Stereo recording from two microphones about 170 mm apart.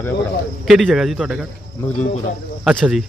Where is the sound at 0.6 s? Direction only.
Centre (ahead or behind).